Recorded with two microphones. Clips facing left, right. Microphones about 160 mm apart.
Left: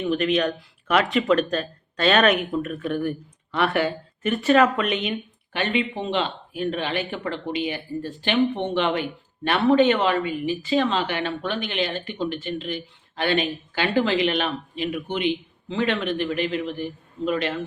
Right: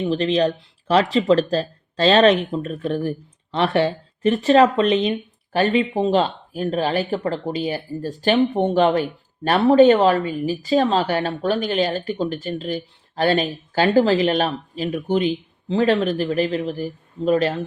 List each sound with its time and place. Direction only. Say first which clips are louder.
0.0 s speech: right 3 dB; 30° right (ahead or behind)